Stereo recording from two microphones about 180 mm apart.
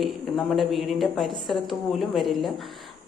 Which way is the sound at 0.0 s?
Centre (ahead or behind).